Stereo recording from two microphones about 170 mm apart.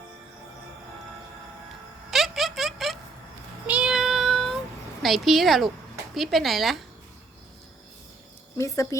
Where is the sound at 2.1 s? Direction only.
Centre (ahead or behind).